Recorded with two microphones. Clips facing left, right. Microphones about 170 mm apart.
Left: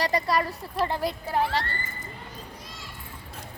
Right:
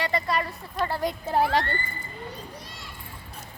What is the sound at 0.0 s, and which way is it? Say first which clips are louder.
Speech: left 2 dB; 35° left (ahead or behind).